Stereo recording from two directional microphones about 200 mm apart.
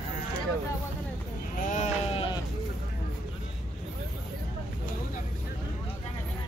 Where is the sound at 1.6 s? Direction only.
40° left (ahead or behind).